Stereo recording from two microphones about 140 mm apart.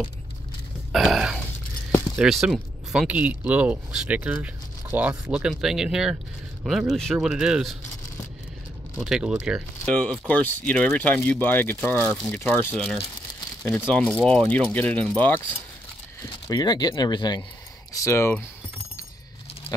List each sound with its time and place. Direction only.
0.9 s a sound: centre (ahead or behind)
2.1 s speech: 5° right (ahead or behind)
8.9 s speech: 5° right (ahead or behind)
9.8 s speech: 5° left (ahead or behind)
16.2 s speech: 30° left (ahead or behind)
17.9 s speech: 20° left (ahead or behind)